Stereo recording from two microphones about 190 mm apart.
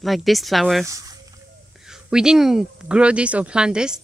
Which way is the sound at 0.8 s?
15° right (ahead or behind).